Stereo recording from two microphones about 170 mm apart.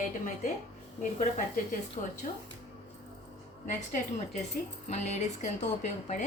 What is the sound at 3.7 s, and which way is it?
A woman's voice, 45° left (ahead or behind).